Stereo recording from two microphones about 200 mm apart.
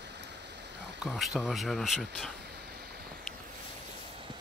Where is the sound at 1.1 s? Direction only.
Centre (ahead or behind).